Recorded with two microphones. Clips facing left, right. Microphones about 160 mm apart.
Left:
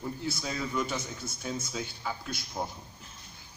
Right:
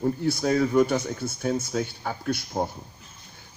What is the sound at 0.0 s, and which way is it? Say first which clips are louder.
A man's voice: right 11 dB; 55° right (ahead or behind).